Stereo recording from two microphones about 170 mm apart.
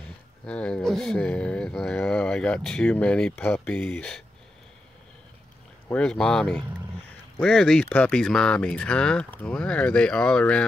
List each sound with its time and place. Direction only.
0.5 s speech: 5° left (ahead or behind)
5.9 s speech: 5° left (ahead or behind)